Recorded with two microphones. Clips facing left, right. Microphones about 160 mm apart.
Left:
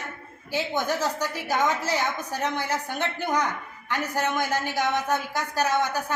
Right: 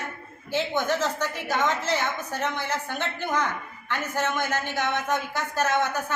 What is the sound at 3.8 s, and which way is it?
A woman's voice, 15° left (ahead or behind).